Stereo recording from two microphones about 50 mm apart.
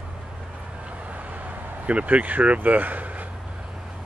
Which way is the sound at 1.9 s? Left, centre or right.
Right.